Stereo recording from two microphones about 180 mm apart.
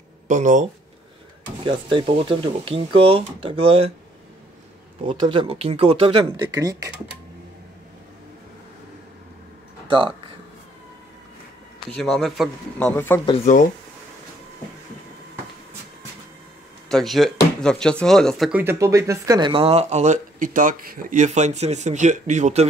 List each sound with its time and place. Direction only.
0.3 s speech: 45° right (ahead or behind)
1.6 s speech: 25° right (ahead or behind)
5.0 s speech: 25° right (ahead or behind)
9.8 s speech: 30° right (ahead or behind)
11.9 s speech: centre (ahead or behind)
13.5 s speech: 45° left (ahead or behind)
16.9 s speech: centre (ahead or behind)
18.5 s speech: 10° right (ahead or behind); by 22.7 s 40° right (ahead or behind)